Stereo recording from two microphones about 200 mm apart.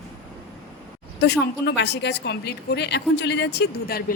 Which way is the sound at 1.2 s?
55° left (ahead or behind).